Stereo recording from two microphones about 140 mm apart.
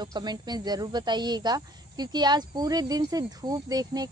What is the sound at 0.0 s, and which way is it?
A woman's voice, 30° right (ahead or behind).